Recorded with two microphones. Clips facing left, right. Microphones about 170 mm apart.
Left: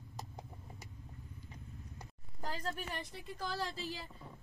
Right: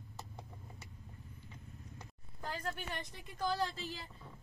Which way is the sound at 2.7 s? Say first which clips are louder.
Left 1 dB; 5° left (ahead or behind).